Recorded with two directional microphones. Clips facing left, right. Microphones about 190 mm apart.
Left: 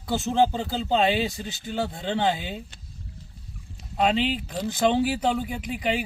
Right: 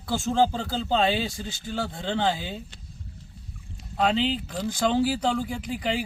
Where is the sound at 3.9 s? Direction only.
15° left (ahead or behind).